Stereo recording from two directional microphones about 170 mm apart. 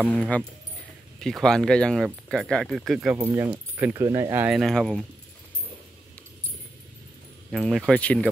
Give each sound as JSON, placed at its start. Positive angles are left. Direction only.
{"t": 0.1, "sound": "speech", "side_deg": 5}
{"t": 4.5, "sound": "speech", "side_deg": 0}
{"t": 7.5, "sound": "speech", "side_deg": 0}